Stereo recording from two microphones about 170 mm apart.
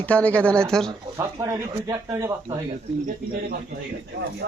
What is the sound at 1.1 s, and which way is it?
Speech, 20° right (ahead or behind).